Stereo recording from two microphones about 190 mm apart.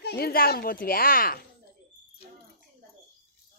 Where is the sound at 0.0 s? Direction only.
55° left (ahead or behind).